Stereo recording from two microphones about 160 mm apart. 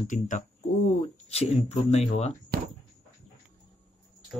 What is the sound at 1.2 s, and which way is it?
Speech, 40° left (ahead or behind).